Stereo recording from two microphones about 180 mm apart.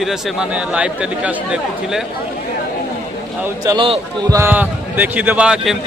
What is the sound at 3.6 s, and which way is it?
Speech, 30° right (ahead or behind).